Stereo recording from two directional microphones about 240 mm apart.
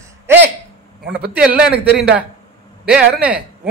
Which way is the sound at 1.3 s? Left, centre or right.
Centre.